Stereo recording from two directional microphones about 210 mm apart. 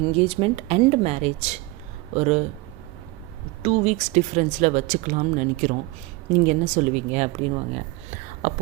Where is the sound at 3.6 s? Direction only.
30° right (ahead or behind).